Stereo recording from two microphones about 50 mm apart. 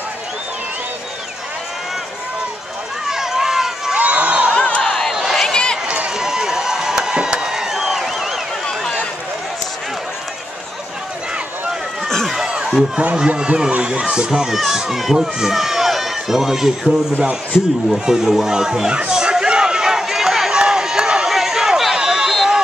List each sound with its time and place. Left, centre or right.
3.1 s run: centre
3.9 s crowd: right
4.6 s crowd: left
5.1 s a sound: centre
5.5 s run: centre
5.9 s run: right
6.1 s a sound: centre
12.6 s speech: centre
13.0 s a child's voice: right; by 16.7 s centre
17.9 s a child's voice: centre
19.0 s run: centre